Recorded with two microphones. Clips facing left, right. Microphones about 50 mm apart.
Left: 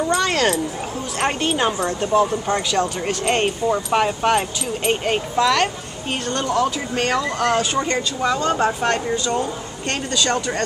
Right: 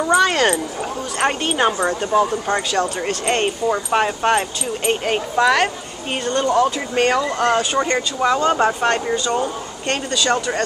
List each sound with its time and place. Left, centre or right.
0.0 s speech: centre
5.3 s speech: centre